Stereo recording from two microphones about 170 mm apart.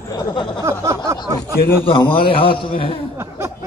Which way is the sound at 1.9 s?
30° left (ahead or behind).